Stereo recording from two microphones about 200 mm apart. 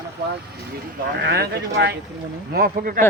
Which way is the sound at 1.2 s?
50° right (ahead or behind).